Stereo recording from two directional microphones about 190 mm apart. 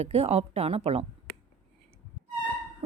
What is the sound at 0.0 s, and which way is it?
A woman's voice, 30° right (ahead or behind).